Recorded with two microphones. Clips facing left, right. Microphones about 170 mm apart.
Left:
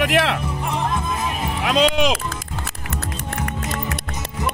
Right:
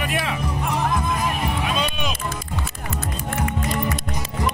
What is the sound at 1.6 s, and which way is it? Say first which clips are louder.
Music: left 7 dB; 90° left.